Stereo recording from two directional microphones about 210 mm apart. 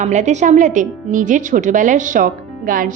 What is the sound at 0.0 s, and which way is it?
A woman's voice, 35° right (ahead or behind).